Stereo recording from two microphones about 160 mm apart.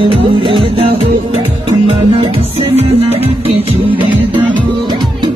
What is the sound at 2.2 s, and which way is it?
Music, 40° right (ahead or behind).